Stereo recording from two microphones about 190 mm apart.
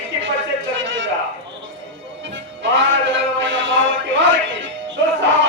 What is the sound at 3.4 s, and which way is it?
Music, 75° right (ahead or behind).